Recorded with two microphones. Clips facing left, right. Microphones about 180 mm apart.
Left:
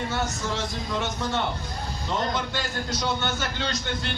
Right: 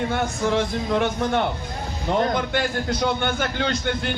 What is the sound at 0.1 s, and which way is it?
A man's voice, 55° right (ahead or behind).